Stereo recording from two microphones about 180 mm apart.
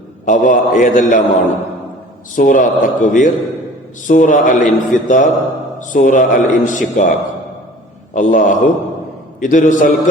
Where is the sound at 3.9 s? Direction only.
45° left (ahead or behind).